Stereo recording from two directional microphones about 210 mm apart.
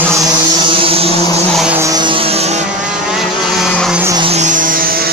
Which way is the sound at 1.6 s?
10° right (ahead or behind).